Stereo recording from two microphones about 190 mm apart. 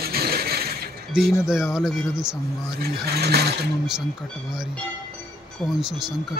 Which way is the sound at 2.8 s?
55° right (ahead or behind).